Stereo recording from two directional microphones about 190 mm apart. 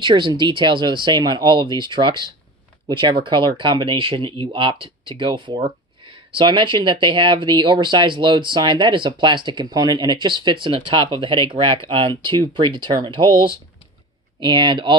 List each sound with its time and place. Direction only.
0.0 s speech: 25° right (ahead or behind)